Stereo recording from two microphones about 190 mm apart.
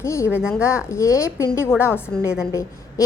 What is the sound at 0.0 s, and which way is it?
A woman's voice, 15° left (ahead or behind).